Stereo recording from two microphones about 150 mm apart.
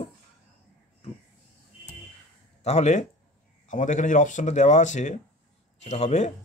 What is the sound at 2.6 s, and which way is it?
A man's voice, 50° left (ahead or behind).